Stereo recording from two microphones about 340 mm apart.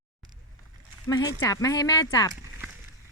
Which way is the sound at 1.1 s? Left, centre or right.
Centre.